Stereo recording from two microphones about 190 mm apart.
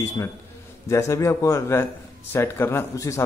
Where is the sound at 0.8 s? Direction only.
15° left (ahead or behind).